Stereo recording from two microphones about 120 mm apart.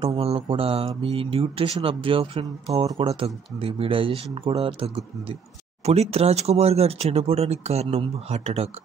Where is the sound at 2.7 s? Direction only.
35° right (ahead or behind).